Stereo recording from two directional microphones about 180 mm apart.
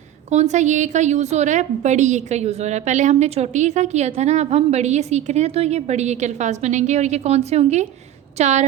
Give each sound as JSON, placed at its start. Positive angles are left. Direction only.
{"t": 0.3, "sound": "a woman's voice", "side_deg": -40}